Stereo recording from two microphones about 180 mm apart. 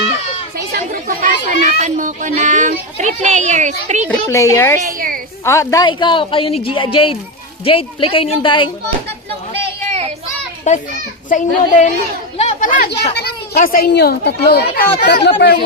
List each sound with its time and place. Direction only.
0.5 s chatter: 55° right (ahead or behind)
1.8 s a child's voice: 45° right (ahead or behind)
4.3 s a woman's voice: 15° left (ahead or behind)
4.9 s a woman's voice: 55° right (ahead or behind)
5.5 s a woman's voice: 15° left (ahead or behind)
10.7 s a child's voice: 40° left (ahead or behind)
12.4 s chatter: 45° left (ahead or behind)
13.1 s speech: 60° left (ahead or behind)